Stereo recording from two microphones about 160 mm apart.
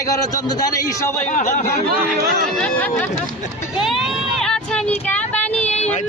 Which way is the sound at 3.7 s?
Centre (ahead or behind).